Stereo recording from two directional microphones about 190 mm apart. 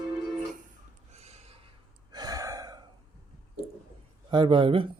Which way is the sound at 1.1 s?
35° right (ahead or behind).